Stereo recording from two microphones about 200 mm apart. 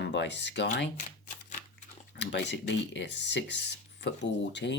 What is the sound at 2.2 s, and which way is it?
Speech, 60° left (ahead or behind).